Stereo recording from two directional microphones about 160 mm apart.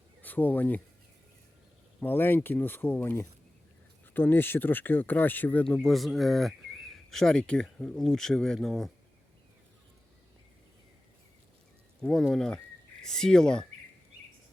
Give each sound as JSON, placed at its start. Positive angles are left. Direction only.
{"t": 0.2, "sound": "speech", "side_deg": 10}
{"t": 2.0, "sound": "speech", "side_deg": 15}
{"t": 12.0, "sound": "speech", "side_deg": 5}